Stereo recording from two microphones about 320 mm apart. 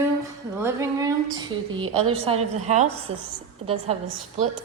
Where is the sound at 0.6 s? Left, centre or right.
Centre.